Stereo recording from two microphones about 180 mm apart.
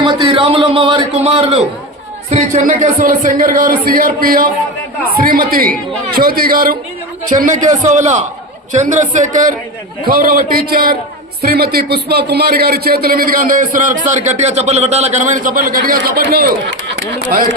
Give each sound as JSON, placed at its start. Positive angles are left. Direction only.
{"t": 0.0, "sound": "a sound", "side_deg": -30}
{"t": 2.3, "sound": "speech", "side_deg": -45}
{"t": 7.3, "sound": "a man's voice", "side_deg": -40}